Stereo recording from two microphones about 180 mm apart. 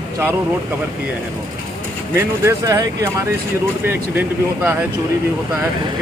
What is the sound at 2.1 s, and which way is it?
Speech, 15° right (ahead or behind).